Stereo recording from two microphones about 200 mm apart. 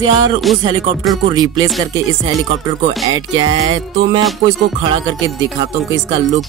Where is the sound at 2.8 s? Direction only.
20° right (ahead or behind).